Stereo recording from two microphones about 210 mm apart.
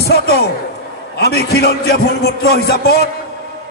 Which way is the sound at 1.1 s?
50° left (ahead or behind).